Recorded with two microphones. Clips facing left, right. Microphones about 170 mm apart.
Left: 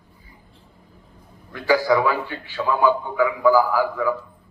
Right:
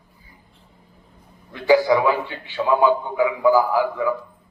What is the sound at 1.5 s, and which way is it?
A man's voice, 20° right (ahead or behind).